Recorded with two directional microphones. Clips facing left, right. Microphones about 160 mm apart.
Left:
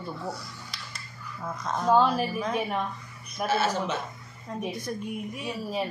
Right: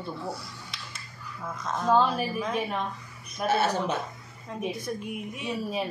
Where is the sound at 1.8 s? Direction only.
15° left (ahead or behind).